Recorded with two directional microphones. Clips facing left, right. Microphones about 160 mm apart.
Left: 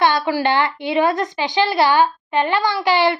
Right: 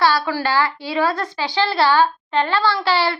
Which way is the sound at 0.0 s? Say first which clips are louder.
Left 2 dB; 20° left (ahead or behind).